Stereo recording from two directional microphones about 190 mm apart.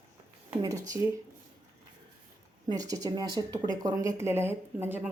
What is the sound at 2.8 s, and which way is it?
Speech, 20° right (ahead or behind).